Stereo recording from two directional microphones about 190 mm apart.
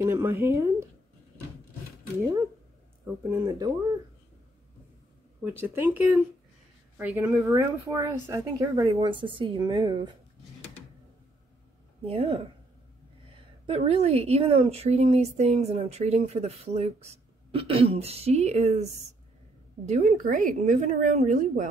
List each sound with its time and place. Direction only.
0.0 s a woman's voice: 15° right (ahead or behind)
3.3 s a woman's voice: 15° right (ahead or behind)
5.4 s a woman's voice: 10° right (ahead or behind)
12.1 s a woman's voice: 30° right (ahead or behind)
13.7 s a woman's voice: 30° right (ahead or behind)
19.9 s a woman's voice: 45° right (ahead or behind)